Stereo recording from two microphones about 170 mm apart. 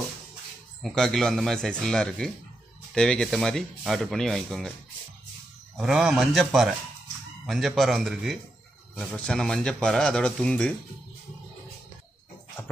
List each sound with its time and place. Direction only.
0.8 s speech: centre (ahead or behind)
5.8 s speech: 5° right (ahead or behind)